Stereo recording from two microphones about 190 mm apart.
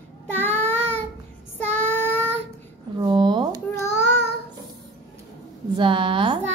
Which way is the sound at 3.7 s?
15° left (ahead or behind).